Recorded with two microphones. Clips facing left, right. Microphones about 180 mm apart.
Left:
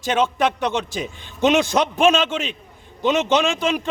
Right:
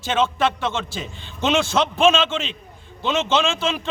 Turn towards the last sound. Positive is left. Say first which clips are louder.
# left 2 dB
turn(degrees=15)  # may be behind; listen again after turning